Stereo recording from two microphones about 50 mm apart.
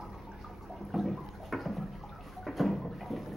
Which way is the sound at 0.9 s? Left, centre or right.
Centre.